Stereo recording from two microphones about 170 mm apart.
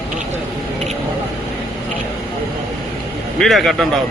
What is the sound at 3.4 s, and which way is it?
Speech, centre (ahead or behind).